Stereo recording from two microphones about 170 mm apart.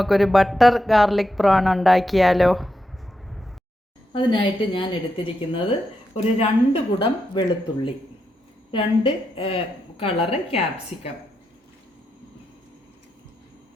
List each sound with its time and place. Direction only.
0.0 s speech: centre (ahead or behind)
4.1 s speech: 30° left (ahead or behind)